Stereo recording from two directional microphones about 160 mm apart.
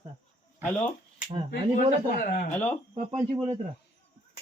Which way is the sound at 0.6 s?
10° left (ahead or behind).